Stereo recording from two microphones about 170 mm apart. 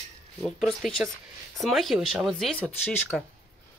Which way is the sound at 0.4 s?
Centre (ahead or behind).